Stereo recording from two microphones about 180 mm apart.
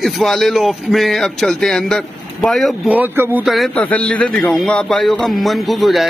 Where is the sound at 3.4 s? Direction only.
Centre (ahead or behind).